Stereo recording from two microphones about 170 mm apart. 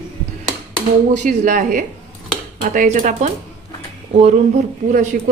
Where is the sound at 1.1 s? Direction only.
45° right (ahead or behind).